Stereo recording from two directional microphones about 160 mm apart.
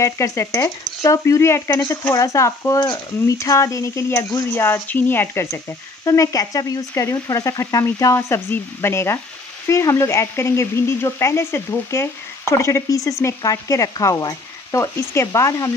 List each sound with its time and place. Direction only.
0.0 s frying: 20° left (ahead or behind)
1.0 s speech: 20° left (ahead or behind)
6.0 s frying: 20° left (ahead or behind)
9.7 s speech: 20° left (ahead or behind)
13.2 s frying: 20° left (ahead or behind)